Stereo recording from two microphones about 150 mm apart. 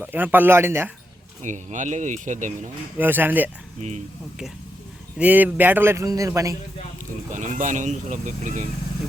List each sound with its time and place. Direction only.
0.0 s a man's voice: 10° right (ahead or behind)
1.4 s speech: 55° right (ahead or behind)
3.0 s a man's voice: 15° right (ahead or behind)
3.8 s speech: 50° right (ahead or behind)
5.1 s a man's voice: 10° right (ahead or behind)
7.3 s speech: 55° right (ahead or behind)